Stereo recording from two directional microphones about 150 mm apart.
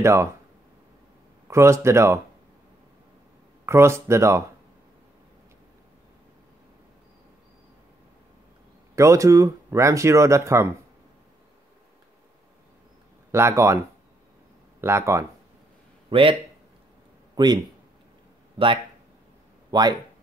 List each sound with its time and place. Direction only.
0.0 s speech: 20° right (ahead or behind)
1.5 s speech: 20° right (ahead or behind)
3.6 s speech: 20° right (ahead or behind)
8.9 s speech: 20° right (ahead or behind)
13.3 s speech: 15° right (ahead or behind)
14.8 s speech: 15° right (ahead or behind)
16.1 s speech: 35° right (ahead or behind)
17.4 s speech: 30° right (ahead or behind)
19.7 s speech: 30° right (ahead or behind)